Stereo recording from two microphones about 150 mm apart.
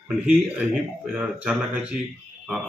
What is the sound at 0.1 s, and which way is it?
Speech, 10° right (ahead or behind).